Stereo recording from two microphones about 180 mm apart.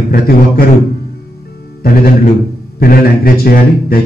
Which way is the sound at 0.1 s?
55° left (ahead or behind).